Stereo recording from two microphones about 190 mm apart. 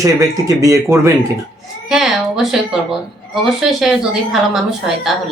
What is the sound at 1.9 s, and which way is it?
Speech, centre (ahead or behind).